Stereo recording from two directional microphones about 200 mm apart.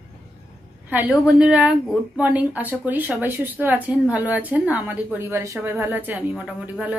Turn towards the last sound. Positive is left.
turn(degrees=-5)  # may be behind; listen again after turning